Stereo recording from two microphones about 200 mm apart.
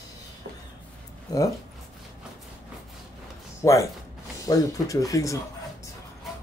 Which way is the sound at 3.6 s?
15° left (ahead or behind).